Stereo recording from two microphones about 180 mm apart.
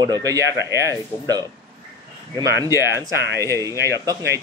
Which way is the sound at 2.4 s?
15° right (ahead or behind).